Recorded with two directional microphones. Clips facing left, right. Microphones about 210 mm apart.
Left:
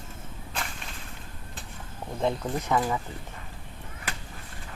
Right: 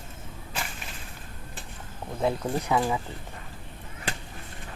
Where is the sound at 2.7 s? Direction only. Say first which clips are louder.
Even; 10° right (ahead or behind).